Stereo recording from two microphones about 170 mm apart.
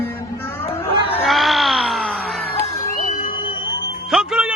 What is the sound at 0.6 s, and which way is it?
Speech, 35° left (ahead or behind).